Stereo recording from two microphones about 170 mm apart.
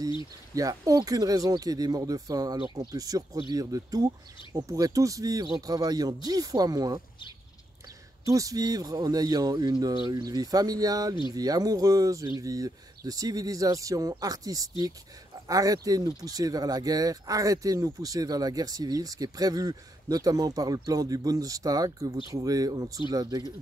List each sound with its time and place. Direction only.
0.6 s speech: 20° right (ahead or behind)
8.3 s speech: 20° right (ahead or behind)